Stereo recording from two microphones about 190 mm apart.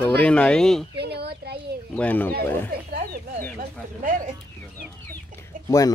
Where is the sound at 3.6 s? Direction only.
45° right (ahead or behind).